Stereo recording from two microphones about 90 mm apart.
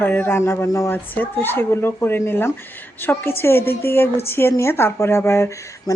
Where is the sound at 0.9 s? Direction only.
25° left (ahead or behind).